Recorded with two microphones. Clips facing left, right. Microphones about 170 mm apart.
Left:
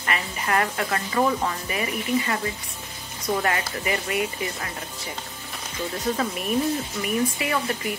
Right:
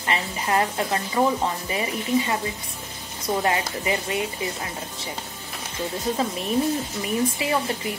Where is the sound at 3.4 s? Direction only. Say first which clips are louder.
Right 2 dB; 20° right (ahead or behind).